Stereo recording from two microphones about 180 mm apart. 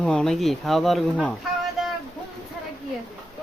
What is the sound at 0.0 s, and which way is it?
Speech, 5° left (ahead or behind).